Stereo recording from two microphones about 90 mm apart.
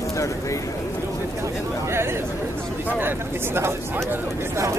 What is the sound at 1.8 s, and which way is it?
Chatter, 30° right (ahead or behind).